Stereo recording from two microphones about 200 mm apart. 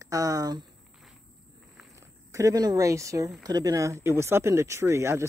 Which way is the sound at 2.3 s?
15° right (ahead or behind).